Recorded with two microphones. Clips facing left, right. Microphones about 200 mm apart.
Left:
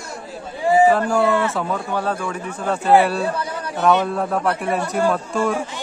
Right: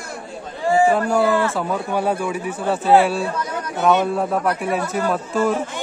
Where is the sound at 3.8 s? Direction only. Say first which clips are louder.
Even; 5° right (ahead or behind).